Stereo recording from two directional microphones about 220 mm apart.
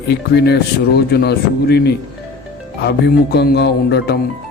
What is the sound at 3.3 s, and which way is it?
Speech, 50° left (ahead or behind).